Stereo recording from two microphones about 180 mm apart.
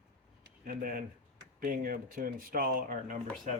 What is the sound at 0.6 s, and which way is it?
Speech, 50° right (ahead or behind).